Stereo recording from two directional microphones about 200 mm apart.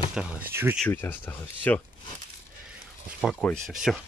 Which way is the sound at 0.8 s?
10° left (ahead or behind).